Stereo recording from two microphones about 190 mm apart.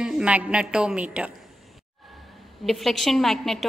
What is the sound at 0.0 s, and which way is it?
A woman's voice, 5° right (ahead or behind).